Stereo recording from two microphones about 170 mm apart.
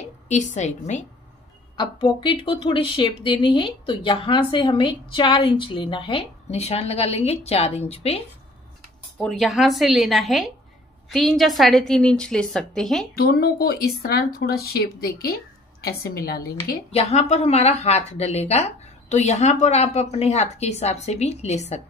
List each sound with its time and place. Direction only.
0.3 s a woman's voice: 45° left (ahead or behind)
1.8 s a woman's voice: 25° left (ahead or behind)
9.2 s a woman's voice: centre (ahead or behind)
13.1 s speech: 65° left (ahead or behind)
16.9 s a woman's voice: 40° left (ahead or behind)